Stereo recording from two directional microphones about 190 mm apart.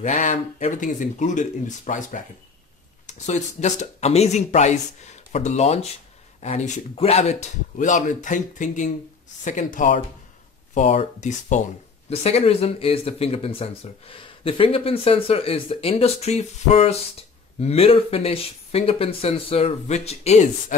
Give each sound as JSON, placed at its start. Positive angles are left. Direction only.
{"t": 0.0, "sound": "speech", "side_deg": 40}
{"t": 3.3, "sound": "speech", "side_deg": 40}